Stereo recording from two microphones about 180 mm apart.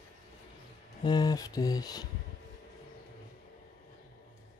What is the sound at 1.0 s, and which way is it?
Speech, 25° left (ahead or behind).